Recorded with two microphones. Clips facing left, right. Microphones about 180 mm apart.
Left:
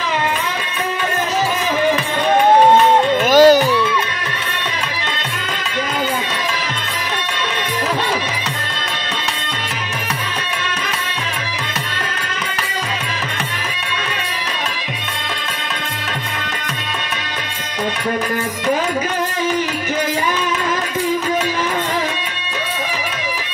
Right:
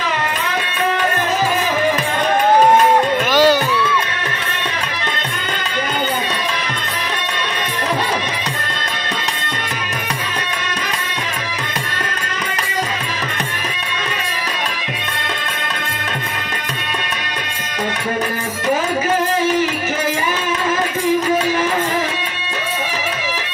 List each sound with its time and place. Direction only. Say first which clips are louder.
3.3 s music: left 6 dB; 45° left (ahead or behind)